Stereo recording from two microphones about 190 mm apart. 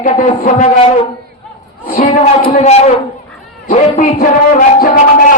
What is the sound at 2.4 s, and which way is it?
A man's voice, 45° left (ahead or behind).